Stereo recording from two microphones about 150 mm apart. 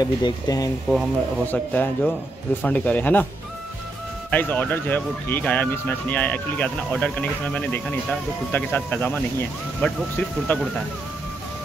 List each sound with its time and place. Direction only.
0.0 s speech: 25° left (ahead or behind)
1.5 s speech: 10° left (ahead or behind)
4.3 s speech: 10° left (ahead or behind)